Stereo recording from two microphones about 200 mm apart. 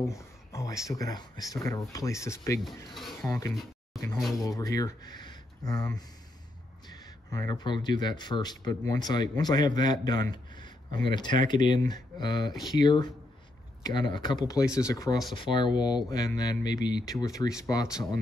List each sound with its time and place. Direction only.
0.0 s speech: 15° left (ahead or behind)
2.6 s speech: centre (ahead or behind)
3.3 s speech: 15° left (ahead or behind)
4.2 s speech: centre (ahead or behind)
4.5 s speech: 15° left (ahead or behind)